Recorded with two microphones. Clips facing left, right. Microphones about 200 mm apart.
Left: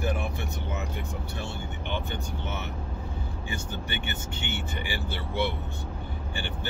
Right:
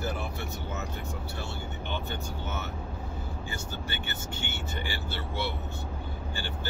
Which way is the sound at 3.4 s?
20° left (ahead or behind).